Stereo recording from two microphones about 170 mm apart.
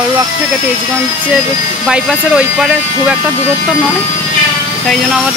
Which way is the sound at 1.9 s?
5° right (ahead or behind).